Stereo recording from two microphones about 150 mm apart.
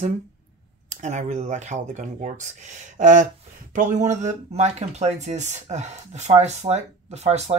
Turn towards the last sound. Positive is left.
turn(degrees=-45)  # may be behind; listen again after turning